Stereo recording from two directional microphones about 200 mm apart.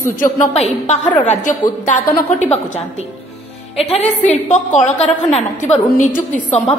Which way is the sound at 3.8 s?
30° left (ahead or behind).